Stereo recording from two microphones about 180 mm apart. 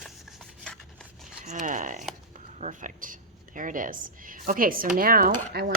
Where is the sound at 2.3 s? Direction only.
45° right (ahead or behind).